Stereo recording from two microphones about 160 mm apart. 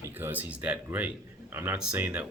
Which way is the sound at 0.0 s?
15° right (ahead or behind).